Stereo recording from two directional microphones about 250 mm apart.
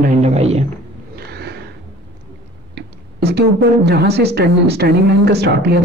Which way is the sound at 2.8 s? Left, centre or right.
Right.